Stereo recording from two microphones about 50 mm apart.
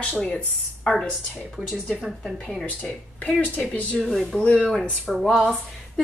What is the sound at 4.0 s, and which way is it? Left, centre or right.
Speech, centre.